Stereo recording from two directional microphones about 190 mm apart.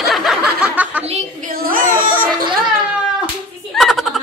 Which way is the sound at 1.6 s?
45° right (ahead or behind).